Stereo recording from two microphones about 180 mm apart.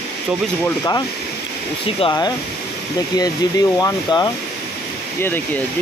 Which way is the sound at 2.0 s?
20° left (ahead or behind).